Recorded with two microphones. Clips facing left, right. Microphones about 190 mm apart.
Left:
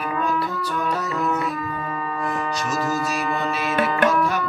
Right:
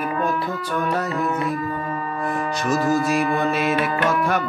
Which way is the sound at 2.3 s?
55° right (ahead or behind).